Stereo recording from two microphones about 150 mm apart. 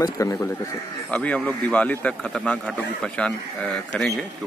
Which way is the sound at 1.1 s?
10° left (ahead or behind).